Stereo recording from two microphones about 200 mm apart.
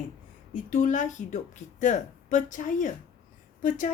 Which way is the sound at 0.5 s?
40° left (ahead or behind).